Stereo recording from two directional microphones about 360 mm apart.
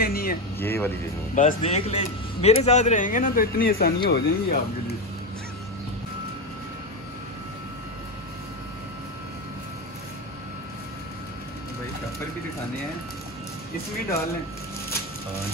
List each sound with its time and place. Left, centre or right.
0.0 s a sound: left
0.6 s speech: centre
1.3 s speech: centre